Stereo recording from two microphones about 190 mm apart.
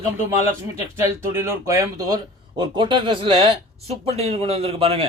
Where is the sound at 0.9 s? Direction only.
15° right (ahead or behind).